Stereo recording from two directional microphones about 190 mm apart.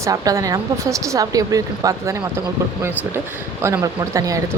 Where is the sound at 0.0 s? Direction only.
15° right (ahead or behind).